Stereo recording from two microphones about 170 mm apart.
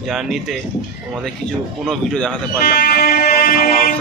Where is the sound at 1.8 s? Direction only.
5° left (ahead or behind).